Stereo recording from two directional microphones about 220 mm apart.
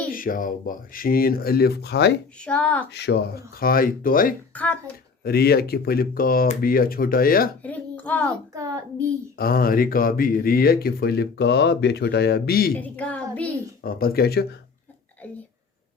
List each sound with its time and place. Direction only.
0.1 s speech: 40° left (ahead or behind)
2.4 s speech: 5° left (ahead or behind)
2.9 s speech: 50° left (ahead or behind)
4.5 s speech: 5° left (ahead or behind)
5.2 s speech: 45° left (ahead or behind)
7.6 s a woman's voice: 5° left (ahead or behind)
8.3 s a child's voice: 15° right (ahead or behind)
9.4 s speech: 40° left (ahead or behind)
12.7 s speech: 5° left (ahead or behind)
13.8 s speech: 45° left (ahead or behind)